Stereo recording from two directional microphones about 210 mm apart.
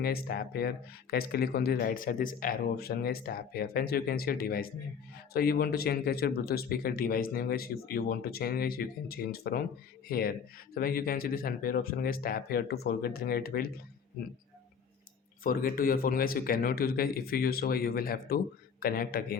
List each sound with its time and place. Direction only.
0.0 s speech: 45° left (ahead or behind)
15.4 s speech: 45° left (ahead or behind)